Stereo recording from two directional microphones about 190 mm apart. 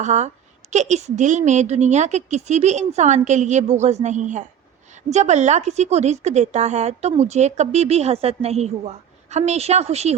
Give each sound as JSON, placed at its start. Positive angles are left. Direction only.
{"t": 0.0, "sound": "speech", "side_deg": -40}